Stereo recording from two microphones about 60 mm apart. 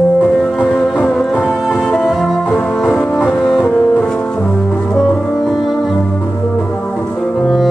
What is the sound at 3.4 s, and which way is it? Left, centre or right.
Music, centre.